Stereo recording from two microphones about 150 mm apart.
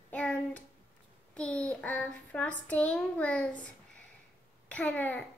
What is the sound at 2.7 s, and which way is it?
Speech, 10° left (ahead or behind).